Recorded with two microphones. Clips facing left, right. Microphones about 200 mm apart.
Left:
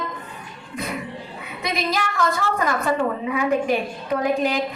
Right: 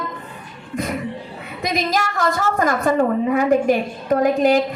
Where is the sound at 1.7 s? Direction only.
45° right (ahead or behind).